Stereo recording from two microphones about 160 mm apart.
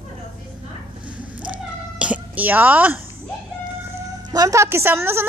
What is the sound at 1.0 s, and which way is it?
Cat, 10° right (ahead or behind).